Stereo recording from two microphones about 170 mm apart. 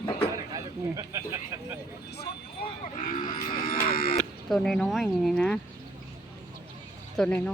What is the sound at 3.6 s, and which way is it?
Cattle, 60° left (ahead or behind).